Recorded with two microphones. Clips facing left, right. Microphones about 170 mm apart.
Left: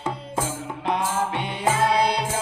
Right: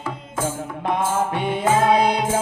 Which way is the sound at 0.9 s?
50° right (ahead or behind).